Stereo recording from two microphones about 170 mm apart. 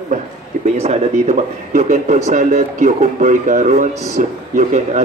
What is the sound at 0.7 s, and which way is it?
Speech, 40° right (ahead or behind).